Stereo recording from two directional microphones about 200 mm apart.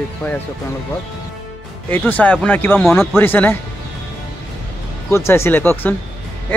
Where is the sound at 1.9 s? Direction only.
10° left (ahead or behind).